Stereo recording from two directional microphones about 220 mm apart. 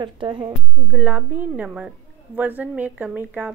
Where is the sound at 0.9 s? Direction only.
5° right (ahead or behind).